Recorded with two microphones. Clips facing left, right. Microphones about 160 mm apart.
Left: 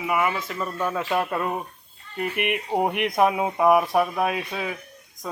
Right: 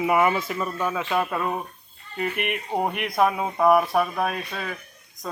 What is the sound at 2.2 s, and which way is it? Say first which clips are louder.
Speech: left 1 dB; 10° left (ahead or behind).